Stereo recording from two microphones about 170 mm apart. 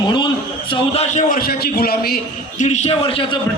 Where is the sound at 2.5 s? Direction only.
40° left (ahead or behind).